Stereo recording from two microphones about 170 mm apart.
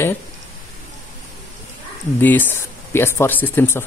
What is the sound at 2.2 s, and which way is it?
Speech, 10° left (ahead or behind).